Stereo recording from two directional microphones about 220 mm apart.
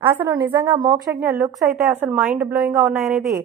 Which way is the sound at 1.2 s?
Centre (ahead or behind).